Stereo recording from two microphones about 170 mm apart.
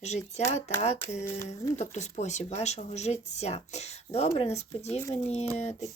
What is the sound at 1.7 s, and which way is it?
Speech, 45° left (ahead or behind).